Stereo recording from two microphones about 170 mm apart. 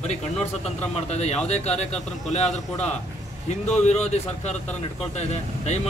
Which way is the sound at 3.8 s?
40° left (ahead or behind).